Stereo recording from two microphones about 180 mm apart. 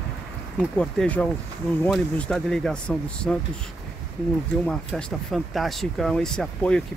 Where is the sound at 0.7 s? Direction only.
5° left (ahead or behind).